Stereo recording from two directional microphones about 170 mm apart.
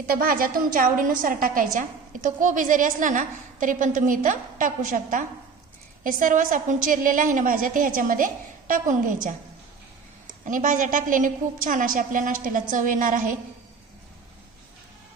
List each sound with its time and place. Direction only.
0.0 s a woman's voice: 60° right (ahead or behind)
10.4 s a woman's voice: 50° right (ahead or behind)